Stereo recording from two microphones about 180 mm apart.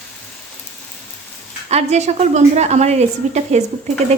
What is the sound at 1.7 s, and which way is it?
A woman's voice, 35° right (ahead or behind).